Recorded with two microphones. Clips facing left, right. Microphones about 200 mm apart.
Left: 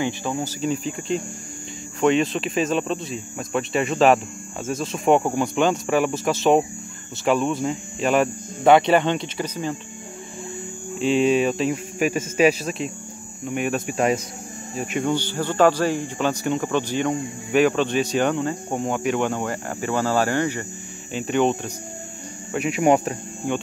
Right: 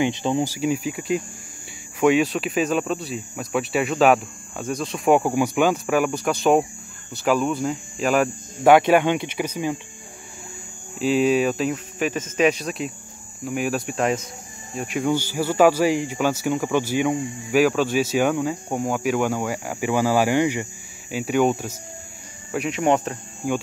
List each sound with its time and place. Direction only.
0.0 s speech: 20° right (ahead or behind)
11.0 s speech: 5° right (ahead or behind)
11.7 s a man's voice: 10° left (ahead or behind); by 21.7 s 5° right (ahead or behind)
22.5 s a man's voice: 5° left (ahead or behind)
23.4 s speech: 5° right (ahead or behind)